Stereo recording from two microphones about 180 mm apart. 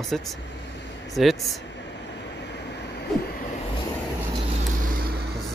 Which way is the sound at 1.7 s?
75° left (ahead or behind).